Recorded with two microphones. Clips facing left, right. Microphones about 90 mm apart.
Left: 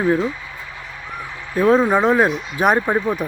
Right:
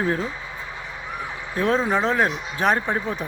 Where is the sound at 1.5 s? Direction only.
10° left (ahead or behind).